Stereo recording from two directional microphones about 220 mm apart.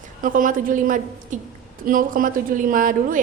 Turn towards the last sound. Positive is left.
turn(degrees=-40)  # may be behind; listen again after turning